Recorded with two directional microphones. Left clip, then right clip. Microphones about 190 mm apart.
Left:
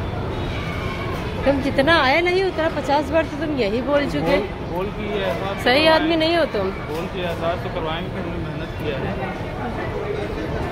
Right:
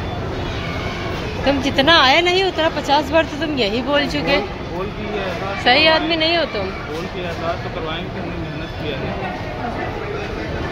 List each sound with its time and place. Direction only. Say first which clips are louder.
1.6 s speech: right 5 dB; 10° left (ahead or behind)
5.6 s a woman's voice: right 2 dB; 25° left (ahead or behind)